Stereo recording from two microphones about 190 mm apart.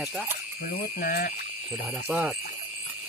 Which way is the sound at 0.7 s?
55° left (ahead or behind).